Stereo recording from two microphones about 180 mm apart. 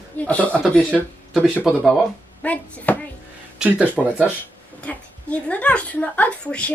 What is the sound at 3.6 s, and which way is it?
Speech, 10° right (ahead or behind).